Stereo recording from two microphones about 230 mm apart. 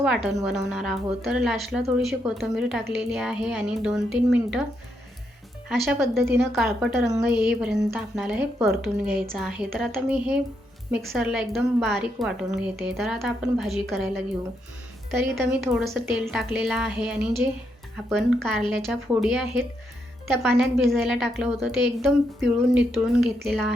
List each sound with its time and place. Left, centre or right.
0.0 s a woman's voice: centre
5.6 s a woman's voice: centre